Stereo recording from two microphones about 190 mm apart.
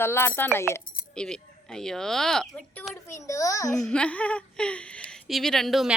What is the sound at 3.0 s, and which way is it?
Speech, 15° left (ahead or behind).